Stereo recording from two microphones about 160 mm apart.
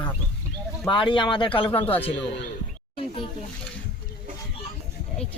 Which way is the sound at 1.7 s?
10° left (ahead or behind).